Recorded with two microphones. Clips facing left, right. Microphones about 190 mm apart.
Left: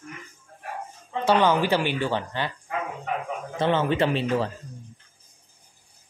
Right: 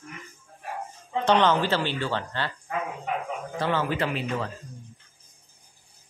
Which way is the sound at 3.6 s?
20° left (ahead or behind).